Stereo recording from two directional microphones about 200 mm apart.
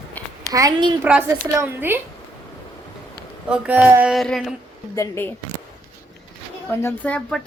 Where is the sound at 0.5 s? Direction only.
20° right (ahead or behind).